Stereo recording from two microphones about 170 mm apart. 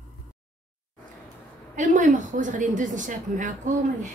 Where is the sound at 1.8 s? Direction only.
45° right (ahead or behind).